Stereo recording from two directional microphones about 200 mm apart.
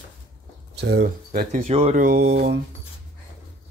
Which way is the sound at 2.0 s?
50° right (ahead or behind).